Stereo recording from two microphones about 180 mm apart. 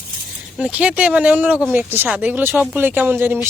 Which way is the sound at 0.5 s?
5° right (ahead or behind).